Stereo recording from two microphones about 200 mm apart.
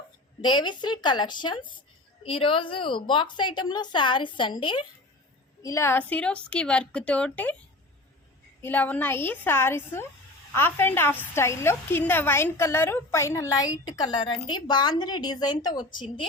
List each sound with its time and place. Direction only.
0.4 s a woman's voice: 20° left (ahead or behind)
5.6 s a woman's voice: 15° left (ahead or behind)
8.6 s a woman's voice: 10° left (ahead or behind)